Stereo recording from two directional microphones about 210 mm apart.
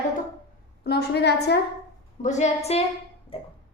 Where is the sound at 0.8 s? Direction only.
50° left (ahead or behind).